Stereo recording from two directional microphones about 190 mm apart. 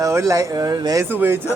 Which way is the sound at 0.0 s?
15° right (ahead or behind).